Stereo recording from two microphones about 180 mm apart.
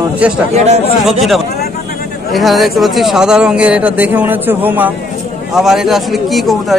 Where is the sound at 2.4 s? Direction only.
Centre (ahead or behind).